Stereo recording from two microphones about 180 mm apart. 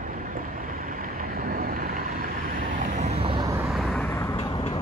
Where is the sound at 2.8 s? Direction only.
40° right (ahead or behind).